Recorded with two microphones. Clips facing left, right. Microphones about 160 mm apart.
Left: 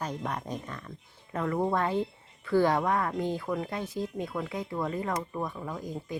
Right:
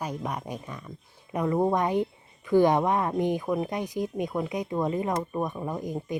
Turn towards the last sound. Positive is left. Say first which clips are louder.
# right 5 dB
turn(degrees=-20)  # may be behind; listen again after turning